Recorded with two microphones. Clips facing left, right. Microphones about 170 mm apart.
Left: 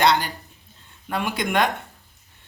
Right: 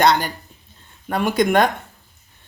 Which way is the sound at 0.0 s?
45° right (ahead or behind).